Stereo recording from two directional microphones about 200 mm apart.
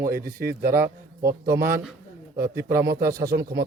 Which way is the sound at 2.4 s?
50° right (ahead or behind).